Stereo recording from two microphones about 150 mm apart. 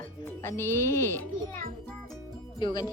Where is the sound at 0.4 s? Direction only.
15° left (ahead or behind).